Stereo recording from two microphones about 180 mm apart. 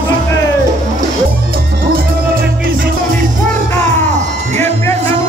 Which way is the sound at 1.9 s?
55° right (ahead or behind).